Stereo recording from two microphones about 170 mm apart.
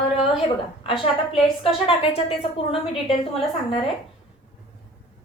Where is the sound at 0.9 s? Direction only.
30° left (ahead or behind).